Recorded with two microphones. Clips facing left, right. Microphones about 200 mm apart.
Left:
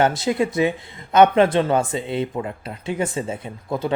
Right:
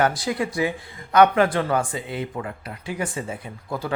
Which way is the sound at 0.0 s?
25° left (ahead or behind).